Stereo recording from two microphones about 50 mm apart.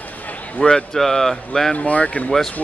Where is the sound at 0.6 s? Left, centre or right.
Centre.